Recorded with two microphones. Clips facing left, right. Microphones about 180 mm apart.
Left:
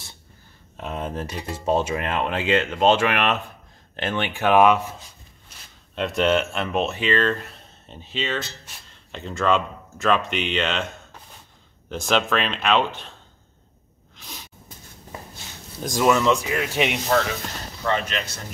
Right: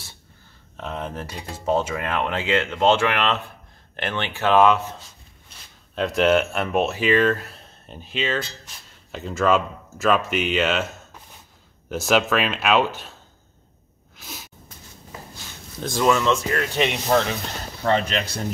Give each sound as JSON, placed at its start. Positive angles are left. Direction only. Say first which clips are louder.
{"t": 0.7, "sound": "speech", "louder": "left 1 dB", "side_deg": 15}
{"t": 5.9, "sound": "speech", "louder": "right 2 dB", "side_deg": 0}
{"t": 11.9, "sound": "speech", "louder": "right 2 dB", "side_deg": -5}
{"t": 14.1, "sound": "a sound", "louder": "right 2 dB", "side_deg": -5}
{"t": 15.9, "sound": "speech", "louder": "left 1 dB", "side_deg": 15}
{"t": 17.8, "sound": "speech", "louder": "right 3 dB", "side_deg": -35}